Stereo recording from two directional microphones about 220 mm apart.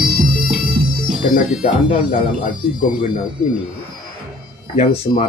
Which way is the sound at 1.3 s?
30° left (ahead or behind).